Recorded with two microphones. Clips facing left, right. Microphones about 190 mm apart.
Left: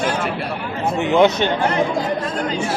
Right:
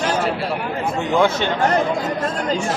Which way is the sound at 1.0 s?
20° left (ahead or behind).